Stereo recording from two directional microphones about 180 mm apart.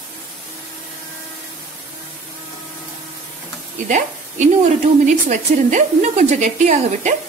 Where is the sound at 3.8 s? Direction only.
45° right (ahead or behind).